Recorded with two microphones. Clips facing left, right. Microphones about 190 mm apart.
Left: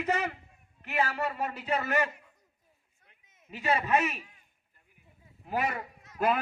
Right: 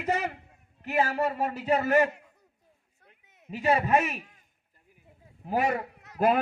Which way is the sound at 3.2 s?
65° right (ahead or behind).